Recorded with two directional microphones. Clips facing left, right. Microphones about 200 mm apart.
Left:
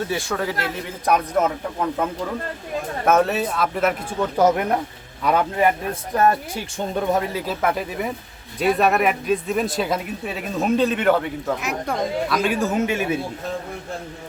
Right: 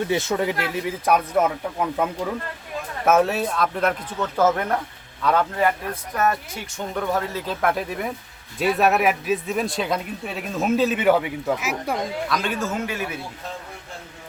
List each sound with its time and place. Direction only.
0.1 s speech: 20° right (ahead or behind)
1.0 s speech: 5° right (ahead or behind)
3.1 s speech: centre (ahead or behind)
4.4 s a man's voice: 15° left (ahead or behind)
6.1 s speech: 30° left (ahead or behind)
7.4 s speech: 5° left (ahead or behind)
12.4 s speech: 15° left (ahead or behind)